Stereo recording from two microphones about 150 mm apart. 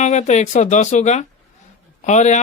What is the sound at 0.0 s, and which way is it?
Speech, 50° left (ahead or behind).